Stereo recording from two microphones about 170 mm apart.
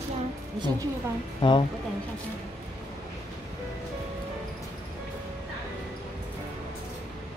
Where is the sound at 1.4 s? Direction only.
30° left (ahead or behind).